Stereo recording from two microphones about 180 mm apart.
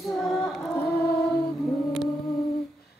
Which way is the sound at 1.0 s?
65° left (ahead or behind).